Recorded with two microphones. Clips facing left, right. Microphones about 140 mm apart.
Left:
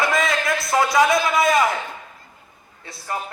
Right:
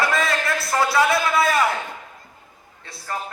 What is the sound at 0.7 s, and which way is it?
Speech, 15° left (ahead or behind).